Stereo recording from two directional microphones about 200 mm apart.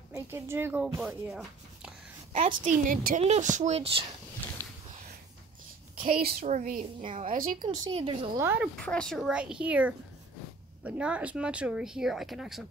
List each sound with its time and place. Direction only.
0.1 s speech: 10° right (ahead or behind)
2.3 s speech: 35° right (ahead or behind)
3.2 s speech: 35° right (ahead or behind)
6.1 s speech: 45° right (ahead or behind)
7.0 s speech: 25° right (ahead or behind)
8.4 s speech: 10° right (ahead or behind)
8.7 s speech: 5° left (ahead or behind)